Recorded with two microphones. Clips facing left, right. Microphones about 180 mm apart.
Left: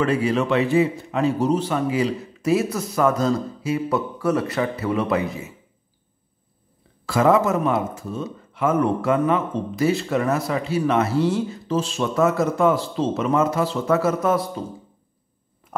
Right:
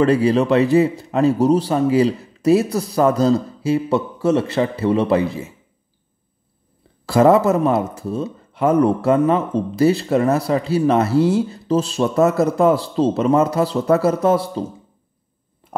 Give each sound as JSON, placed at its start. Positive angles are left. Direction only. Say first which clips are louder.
{"t": 0.0, "sound": "speech", "louder": "right 5 dB", "side_deg": -35}
{"t": 7.1, "sound": "speech", "louder": "right 5 dB", "side_deg": -35}